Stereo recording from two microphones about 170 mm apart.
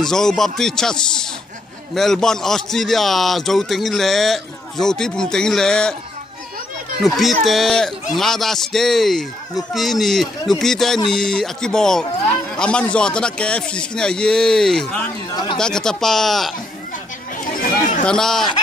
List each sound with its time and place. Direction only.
0.0 s a man's voice: 5° left (ahead or behind)
7.0 s a man's voice: centre (ahead or behind)
17.4 s chatter: 55° left (ahead or behind)
18.0 s a man's voice: 5° left (ahead or behind)